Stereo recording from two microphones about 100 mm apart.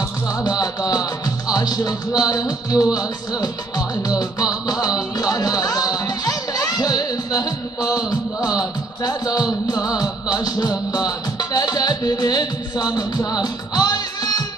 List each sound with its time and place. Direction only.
0.4 s music: 40° left (ahead or behind)